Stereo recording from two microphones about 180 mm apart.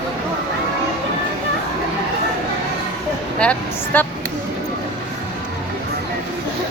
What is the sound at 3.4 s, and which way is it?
Speech, 5° left (ahead or behind).